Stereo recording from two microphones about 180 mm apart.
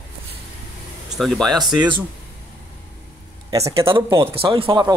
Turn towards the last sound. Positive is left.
turn(degrees=-25)  # may be behind; listen again after turning